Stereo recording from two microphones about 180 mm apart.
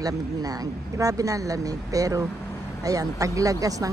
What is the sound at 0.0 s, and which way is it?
Speech, 20° right (ahead or behind).